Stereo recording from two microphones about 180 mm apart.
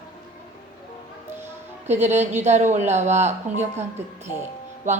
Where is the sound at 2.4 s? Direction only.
40° right (ahead or behind).